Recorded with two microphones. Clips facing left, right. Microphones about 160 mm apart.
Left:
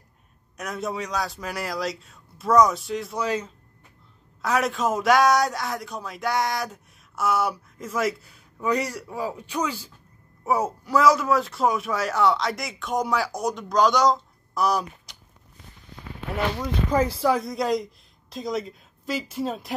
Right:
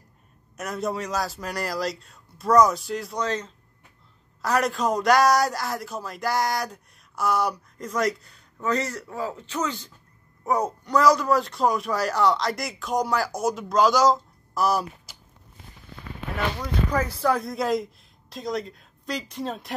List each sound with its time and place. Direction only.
0.6 s a man's voice: centre (ahead or behind)
16.9 s speech: 25° left (ahead or behind)
17.2 s a man's voice: centre (ahead or behind)